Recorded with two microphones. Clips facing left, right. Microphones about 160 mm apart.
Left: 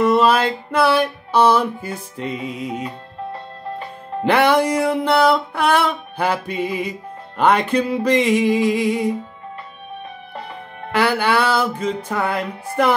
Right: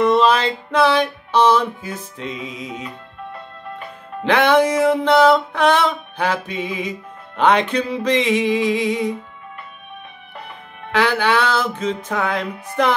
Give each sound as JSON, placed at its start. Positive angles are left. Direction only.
{"t": 0.0, "sound": "music", "side_deg": 10}
{"t": 2.3, "sound": "music", "side_deg": 35}
{"t": 4.2, "sound": "music", "side_deg": 10}
{"t": 10.9, "sound": "music", "side_deg": 10}